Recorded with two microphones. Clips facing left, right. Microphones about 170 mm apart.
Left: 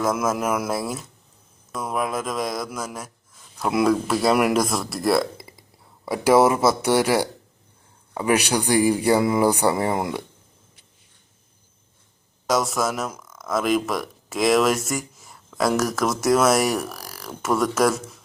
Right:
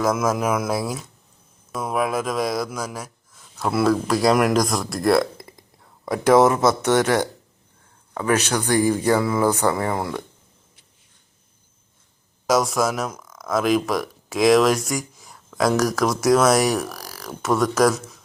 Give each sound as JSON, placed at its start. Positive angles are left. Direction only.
{"t": 0.0, "sound": "speech", "side_deg": 0}
{"t": 3.7, "sound": "speech", "side_deg": 15}
{"t": 3.9, "sound": "speech", "side_deg": 5}
{"t": 12.5, "sound": "speech", "side_deg": 0}